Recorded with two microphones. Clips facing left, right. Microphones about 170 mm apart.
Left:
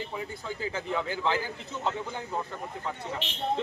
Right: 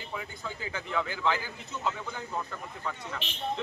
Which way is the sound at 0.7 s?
30° left (ahead or behind).